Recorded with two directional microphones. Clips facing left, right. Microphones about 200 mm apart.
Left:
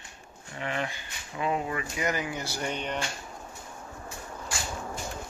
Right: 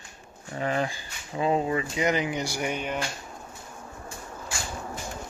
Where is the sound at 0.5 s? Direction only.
40° right (ahead or behind); by 3.0 s 5° right (ahead or behind).